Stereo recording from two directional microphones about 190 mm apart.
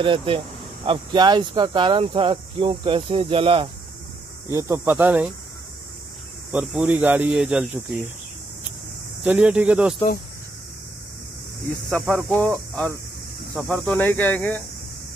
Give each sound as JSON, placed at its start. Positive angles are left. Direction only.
{"t": 0.0, "sound": "speech", "side_deg": -25}
{"t": 4.5, "sound": "speech", "side_deg": -15}
{"t": 6.5, "sound": "speech", "side_deg": -5}
{"t": 9.2, "sound": "speech", "side_deg": -5}
{"t": 11.9, "sound": "speech", "side_deg": -15}
{"t": 12.3, "sound": "speech", "side_deg": 5}